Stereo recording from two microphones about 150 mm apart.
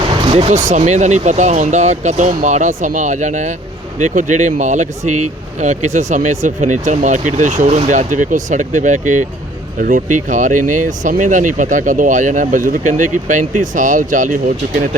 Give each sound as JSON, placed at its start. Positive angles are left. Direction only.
{"t": 0.3, "sound": "speech", "side_deg": -45}